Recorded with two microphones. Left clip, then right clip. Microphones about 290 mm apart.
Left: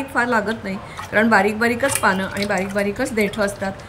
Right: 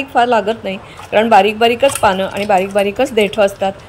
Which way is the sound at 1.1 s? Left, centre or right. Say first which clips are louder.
Right 6 dB; right.